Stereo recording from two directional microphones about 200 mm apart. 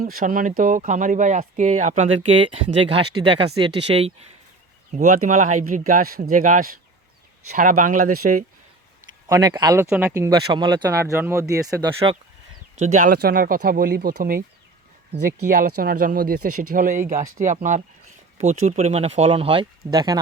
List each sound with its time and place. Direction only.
0.0 s speech: 45° right (ahead or behind)
2.5 s speech: 25° right (ahead or behind); by 8.4 s 40° right (ahead or behind)
9.3 s speech: 15° right (ahead or behind)
12.8 s speech: 40° right (ahead or behind)
15.4 s speech: 45° right (ahead or behind)
16.5 s speech: 90° right
16.7 s speech: 40° right (ahead or behind); by 20.1 s 20° right (ahead or behind)